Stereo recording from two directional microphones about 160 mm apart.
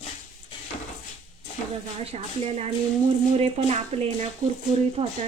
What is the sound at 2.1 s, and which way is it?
Speech, 40° right (ahead or behind).